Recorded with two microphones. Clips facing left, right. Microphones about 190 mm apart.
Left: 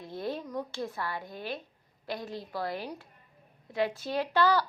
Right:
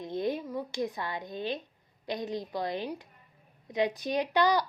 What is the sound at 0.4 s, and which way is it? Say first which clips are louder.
A woman's voice: right 2 dB; 10° right (ahead or behind).